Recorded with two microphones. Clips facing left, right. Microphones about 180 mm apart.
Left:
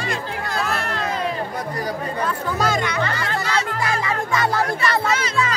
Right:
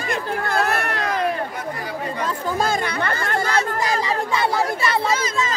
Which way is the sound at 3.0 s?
50° right (ahead or behind).